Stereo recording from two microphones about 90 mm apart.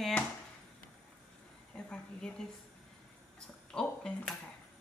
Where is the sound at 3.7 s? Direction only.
10° left (ahead or behind).